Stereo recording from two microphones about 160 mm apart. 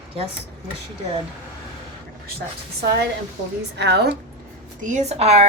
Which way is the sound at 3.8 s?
90° right.